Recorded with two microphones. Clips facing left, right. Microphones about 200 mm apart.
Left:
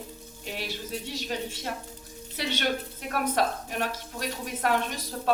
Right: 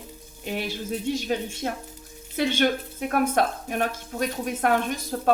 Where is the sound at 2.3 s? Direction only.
50° right (ahead or behind).